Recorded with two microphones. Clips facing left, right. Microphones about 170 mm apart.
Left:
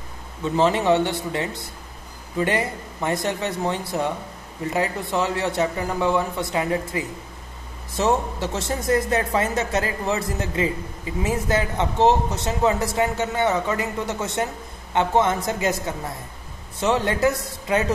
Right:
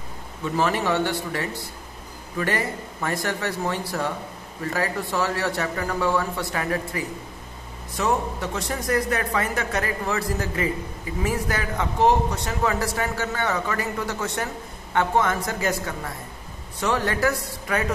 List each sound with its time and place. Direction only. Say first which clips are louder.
0.6 s speech: left 4 dB; 20° left (ahead or behind)